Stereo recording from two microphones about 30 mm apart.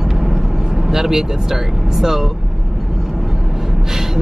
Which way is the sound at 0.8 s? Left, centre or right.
Centre.